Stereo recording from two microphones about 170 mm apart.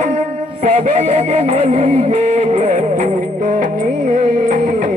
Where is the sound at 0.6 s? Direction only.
45° right (ahead or behind).